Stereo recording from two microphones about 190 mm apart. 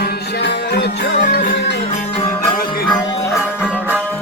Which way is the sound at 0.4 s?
60° left (ahead or behind).